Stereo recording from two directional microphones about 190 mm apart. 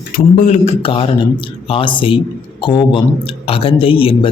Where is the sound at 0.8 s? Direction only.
30° left (ahead or behind).